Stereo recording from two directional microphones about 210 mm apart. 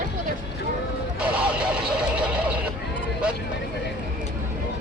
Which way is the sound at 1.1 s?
5° right (ahead or behind).